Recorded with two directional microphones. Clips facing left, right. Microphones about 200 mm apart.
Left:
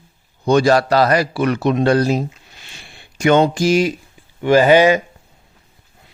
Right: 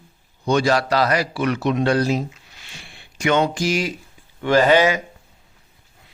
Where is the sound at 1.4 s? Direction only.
40° left (ahead or behind).